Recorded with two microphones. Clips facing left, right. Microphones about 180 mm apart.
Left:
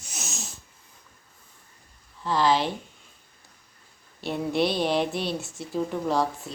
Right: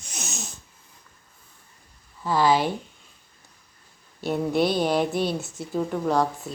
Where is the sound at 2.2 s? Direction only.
5° right (ahead or behind).